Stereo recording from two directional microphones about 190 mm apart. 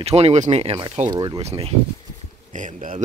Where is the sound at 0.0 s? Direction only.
35° right (ahead or behind).